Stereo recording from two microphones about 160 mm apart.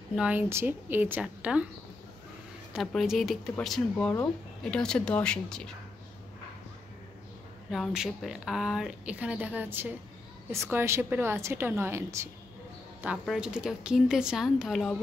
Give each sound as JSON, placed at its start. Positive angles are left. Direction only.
{"t": 0.1, "sound": "a woman's voice", "side_deg": -5}
{"t": 2.7, "sound": "speech", "side_deg": 0}
{"t": 7.7, "sound": "a woman's voice", "side_deg": 0}
{"t": 13.2, "sound": "speech", "side_deg": -5}